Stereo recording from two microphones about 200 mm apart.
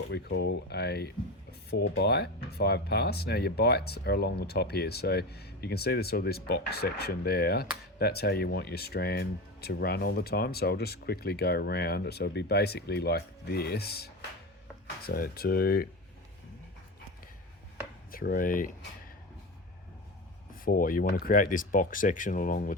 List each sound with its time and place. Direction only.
0.1 s speech: 55° left (ahead or behind)
18.1 s speech: 45° left (ahead or behind)
20.7 s speech: 45° left (ahead or behind)